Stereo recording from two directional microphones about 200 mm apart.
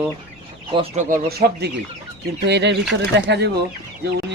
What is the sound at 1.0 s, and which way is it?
Speech, 50° right (ahead or behind).